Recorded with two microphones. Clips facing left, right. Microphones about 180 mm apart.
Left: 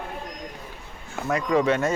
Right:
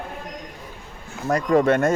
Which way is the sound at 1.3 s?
50° right (ahead or behind).